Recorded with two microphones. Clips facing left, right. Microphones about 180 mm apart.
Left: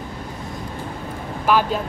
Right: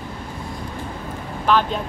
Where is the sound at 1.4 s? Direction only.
10° left (ahead or behind).